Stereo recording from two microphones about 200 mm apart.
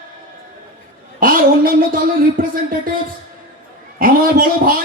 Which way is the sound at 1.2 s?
45° right (ahead or behind).